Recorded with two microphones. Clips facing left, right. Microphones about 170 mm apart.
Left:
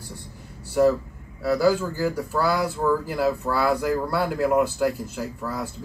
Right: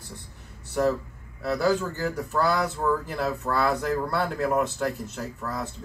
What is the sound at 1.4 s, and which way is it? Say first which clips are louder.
Speech: left 4 dB; 5° left (ahead or behind).